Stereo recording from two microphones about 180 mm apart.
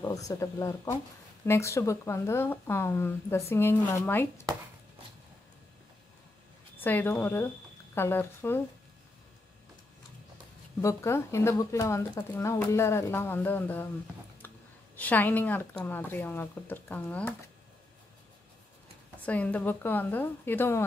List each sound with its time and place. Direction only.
0.3 s speech: 20° left (ahead or behind)
6.8 s speech: 10° left (ahead or behind)
10.8 s speech: 15° left (ahead or behind)
15.0 s speech: 10° left (ahead or behind)
19.2 s speech: 10° left (ahead or behind)